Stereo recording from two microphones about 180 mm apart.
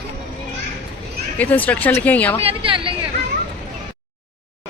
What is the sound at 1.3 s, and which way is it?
Speech, 10° left (ahead or behind).